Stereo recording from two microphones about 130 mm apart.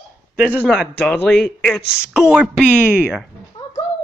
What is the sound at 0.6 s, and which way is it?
Speech, centre (ahead or behind).